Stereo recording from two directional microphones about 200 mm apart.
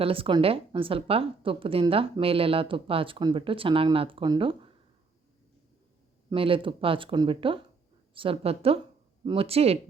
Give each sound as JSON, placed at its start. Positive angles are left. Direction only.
{"t": 0.0, "sound": "a woman's voice", "side_deg": -25}
{"t": 6.3, "sound": "a woman's voice", "side_deg": -25}